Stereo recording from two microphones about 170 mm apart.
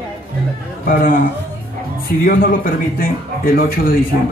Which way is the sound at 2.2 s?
55° left (ahead or behind).